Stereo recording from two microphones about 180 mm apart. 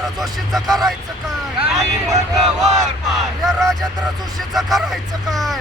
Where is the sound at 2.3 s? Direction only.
Centre (ahead or behind).